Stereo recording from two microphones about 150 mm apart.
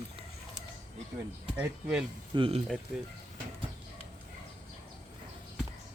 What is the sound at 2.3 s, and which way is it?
Speech, 35° right (ahead or behind).